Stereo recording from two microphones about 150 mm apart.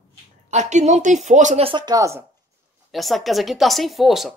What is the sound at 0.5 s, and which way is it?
A woman's voice, 50° right (ahead or behind).